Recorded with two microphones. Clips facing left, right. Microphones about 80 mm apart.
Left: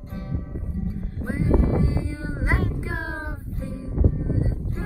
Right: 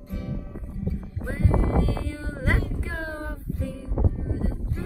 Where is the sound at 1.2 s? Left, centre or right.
Left.